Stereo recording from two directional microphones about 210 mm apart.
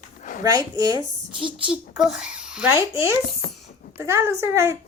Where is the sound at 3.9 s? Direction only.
10° right (ahead or behind).